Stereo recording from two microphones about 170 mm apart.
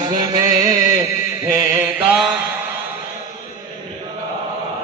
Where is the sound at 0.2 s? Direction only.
20° right (ahead or behind).